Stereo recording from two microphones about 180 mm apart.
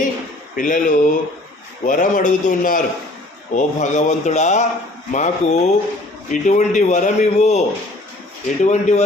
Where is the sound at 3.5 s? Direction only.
40° left (ahead or behind).